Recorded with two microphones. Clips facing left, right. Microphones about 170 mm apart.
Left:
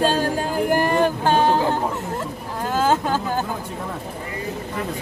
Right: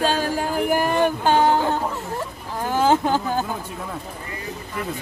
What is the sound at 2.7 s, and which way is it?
Speech, 15° right (ahead or behind).